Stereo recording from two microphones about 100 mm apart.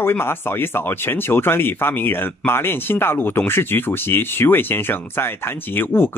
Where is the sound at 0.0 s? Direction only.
20° left (ahead or behind).